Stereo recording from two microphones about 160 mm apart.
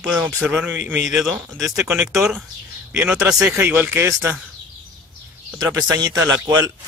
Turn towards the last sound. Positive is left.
turn(degrees=-20)  # may be behind; listen again after turning